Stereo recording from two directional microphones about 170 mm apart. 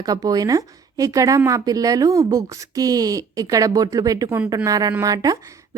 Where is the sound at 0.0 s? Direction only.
20° right (ahead or behind).